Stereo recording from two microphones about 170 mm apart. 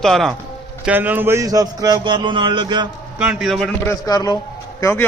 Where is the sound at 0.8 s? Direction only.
10° right (ahead or behind); by 2.9 s 25° right (ahead or behind).